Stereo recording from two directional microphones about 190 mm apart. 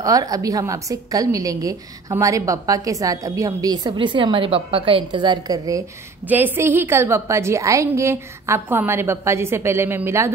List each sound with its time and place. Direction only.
0.0 s a woman's voice: 20° right (ahead or behind)